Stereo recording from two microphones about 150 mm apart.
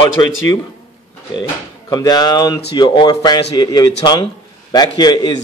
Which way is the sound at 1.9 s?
25° left (ahead or behind).